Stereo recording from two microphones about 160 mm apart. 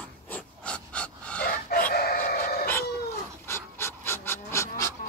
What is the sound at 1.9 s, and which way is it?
Chicken, 75° left (ahead or behind).